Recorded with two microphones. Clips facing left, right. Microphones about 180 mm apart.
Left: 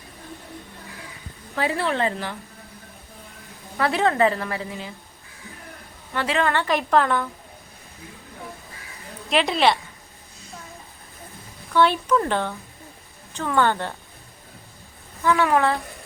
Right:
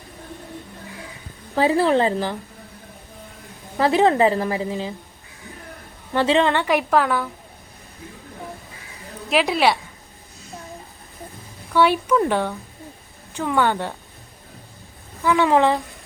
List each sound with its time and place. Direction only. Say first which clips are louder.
1.5 s a woman's voice: right 7 dB; 35° right (ahead or behind)
3.8 s a woman's voice: right 4 dB; 30° right (ahead or behind)
6.1 s a woman's voice: right 6 dB; 30° right (ahead or behind)
6.5 s a woman's voice: right 2 dB; 15° right (ahead or behind)
9.3 s speech: right 1 dB; 5° right (ahead or behind)
11.7 s a woman's voice: right 2 dB; 10° right (ahead or behind)
15.2 s a woman's voice: right 3 dB; 15° right (ahead or behind)